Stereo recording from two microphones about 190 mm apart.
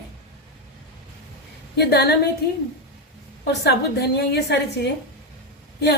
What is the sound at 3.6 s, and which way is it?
A woman's voice, 60° left (ahead or behind).